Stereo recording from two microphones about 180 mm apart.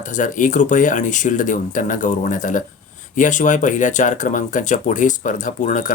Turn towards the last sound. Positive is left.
turn(degrees=45)  # may be behind; listen again after turning